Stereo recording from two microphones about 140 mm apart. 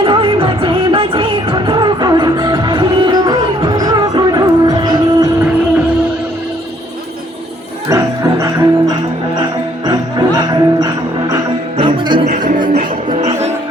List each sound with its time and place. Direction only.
0.0 s music: 40° right (ahead or behind)
7.9 s music: 25° right (ahead or behind)